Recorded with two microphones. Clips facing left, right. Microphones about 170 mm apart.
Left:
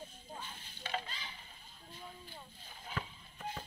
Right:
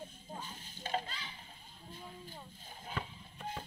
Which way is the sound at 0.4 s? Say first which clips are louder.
Right 2 dB; 45° right (ahead or behind).